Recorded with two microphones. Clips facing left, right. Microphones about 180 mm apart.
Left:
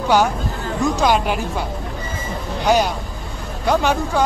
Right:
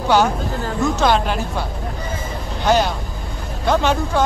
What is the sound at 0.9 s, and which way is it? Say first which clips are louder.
Speech: even; 10° left (ahead or behind).